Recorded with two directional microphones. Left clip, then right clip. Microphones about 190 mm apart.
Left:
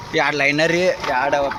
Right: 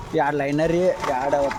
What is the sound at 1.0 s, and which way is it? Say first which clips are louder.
Speech: left 3 dB; 5° right (ahead or behind).